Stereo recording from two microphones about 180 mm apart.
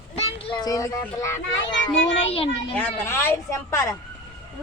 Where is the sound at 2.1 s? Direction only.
30° left (ahead or behind).